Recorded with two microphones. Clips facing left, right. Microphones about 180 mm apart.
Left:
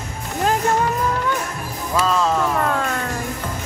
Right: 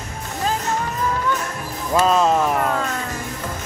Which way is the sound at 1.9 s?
20° right (ahead or behind).